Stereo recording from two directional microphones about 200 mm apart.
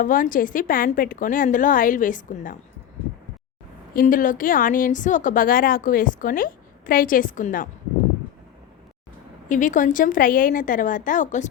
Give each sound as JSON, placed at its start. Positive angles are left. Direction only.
{"t": 0.0, "sound": "a woman's voice", "side_deg": 45}
{"t": 3.9, "sound": "a woman's voice", "side_deg": 45}
{"t": 9.5, "sound": "a woman's voice", "side_deg": 40}